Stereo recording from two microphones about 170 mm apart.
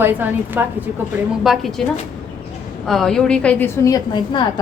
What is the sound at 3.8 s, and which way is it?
Speech, 25° left (ahead or behind).